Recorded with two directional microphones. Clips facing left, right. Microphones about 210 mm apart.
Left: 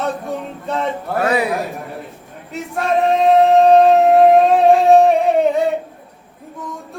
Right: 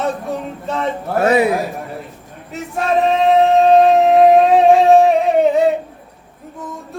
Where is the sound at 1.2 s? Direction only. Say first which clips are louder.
Right 4 dB; 25° right (ahead or behind).